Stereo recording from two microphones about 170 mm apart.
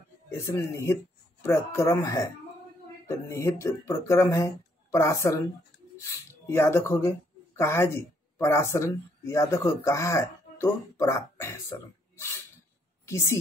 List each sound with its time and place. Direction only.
0.3 s a woman's voice: 15° left (ahead or behind)